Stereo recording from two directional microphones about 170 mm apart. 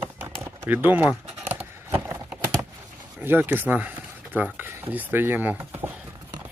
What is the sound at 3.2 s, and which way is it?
Speech, 10° right (ahead or behind).